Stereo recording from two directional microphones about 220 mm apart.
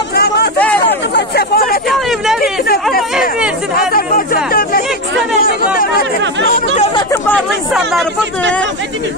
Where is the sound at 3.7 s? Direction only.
40° left (ahead or behind).